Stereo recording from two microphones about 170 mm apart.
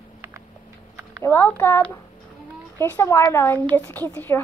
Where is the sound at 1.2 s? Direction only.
10° left (ahead or behind).